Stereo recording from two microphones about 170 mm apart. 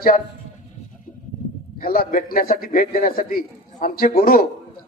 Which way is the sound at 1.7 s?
60° left (ahead or behind).